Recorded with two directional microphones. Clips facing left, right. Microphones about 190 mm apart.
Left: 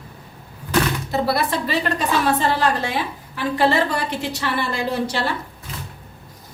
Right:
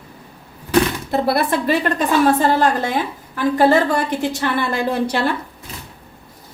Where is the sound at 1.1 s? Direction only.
55° right (ahead or behind).